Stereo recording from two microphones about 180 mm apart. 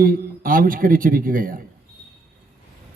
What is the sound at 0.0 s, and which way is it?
Speech, 50° right (ahead or behind).